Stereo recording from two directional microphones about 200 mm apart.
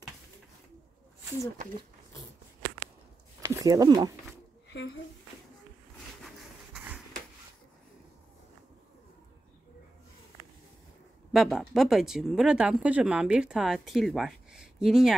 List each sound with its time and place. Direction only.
3.4 s speech: 15° right (ahead or behind)
6.2 s a sound: 5° right (ahead or behind)
11.3 s speech: centre (ahead or behind)